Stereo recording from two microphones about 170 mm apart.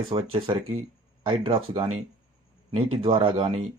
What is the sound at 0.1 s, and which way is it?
Speech, 35° right (ahead or behind).